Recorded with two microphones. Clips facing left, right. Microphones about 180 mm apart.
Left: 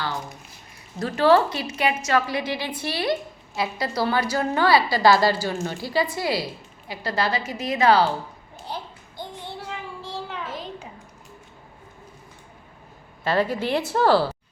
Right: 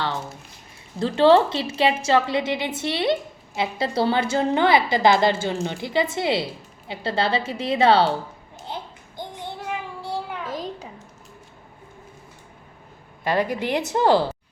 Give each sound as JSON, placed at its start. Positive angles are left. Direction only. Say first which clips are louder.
{"t": 0.9, "sound": "a woman's voice", "louder": "right 2 dB", "side_deg": -25}
{"t": 8.6, "sound": "babbling", "louder": "even", "side_deg": -20}
{"t": 10.4, "sound": "a sound", "louder": "right 3 dB", "side_deg": -40}
{"t": 13.2, "sound": "a woman's voice", "louder": "even", "side_deg": -15}